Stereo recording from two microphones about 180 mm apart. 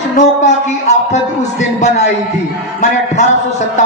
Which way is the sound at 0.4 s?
40° left (ahead or behind).